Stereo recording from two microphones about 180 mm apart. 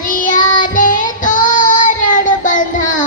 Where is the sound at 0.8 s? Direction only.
50° left (ahead or behind).